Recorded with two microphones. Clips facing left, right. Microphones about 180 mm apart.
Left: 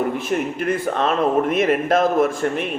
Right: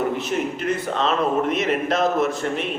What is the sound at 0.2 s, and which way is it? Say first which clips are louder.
Speech: left 2 dB; 50° left (ahead or behind).